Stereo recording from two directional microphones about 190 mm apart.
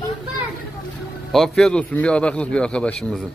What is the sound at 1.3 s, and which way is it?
A man's voice, centre (ahead or behind).